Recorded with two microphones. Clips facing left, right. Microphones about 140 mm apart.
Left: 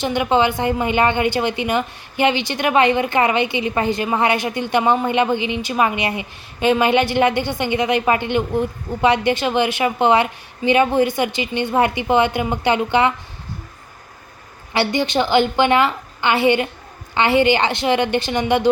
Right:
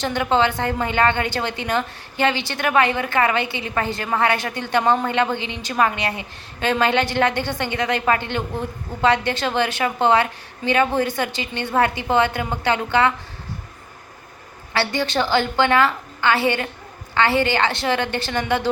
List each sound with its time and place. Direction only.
0.0 s a woman's voice: 15° left (ahead or behind)
14.7 s a woman's voice: 15° left (ahead or behind)